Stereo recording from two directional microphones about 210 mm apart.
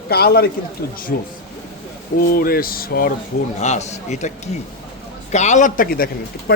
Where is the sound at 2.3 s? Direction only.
45° left (ahead or behind).